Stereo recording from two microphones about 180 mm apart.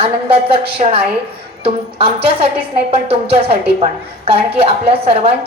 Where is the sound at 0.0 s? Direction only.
30° right (ahead or behind).